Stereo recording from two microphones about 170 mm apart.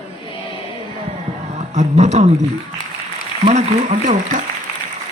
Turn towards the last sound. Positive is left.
turn(degrees=-45)  # may be behind; listen again after turning